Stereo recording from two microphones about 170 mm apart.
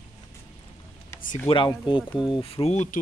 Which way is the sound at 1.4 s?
30° left (ahead or behind).